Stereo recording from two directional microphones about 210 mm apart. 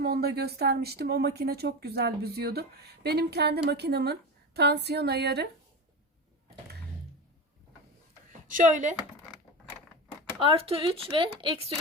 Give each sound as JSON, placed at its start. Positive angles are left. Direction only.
{"t": 0.0, "sound": "a woman's voice", "side_deg": -50}
{"t": 8.4, "sound": "a woman's voice", "side_deg": -40}
{"t": 10.4, "sound": "speech", "side_deg": -25}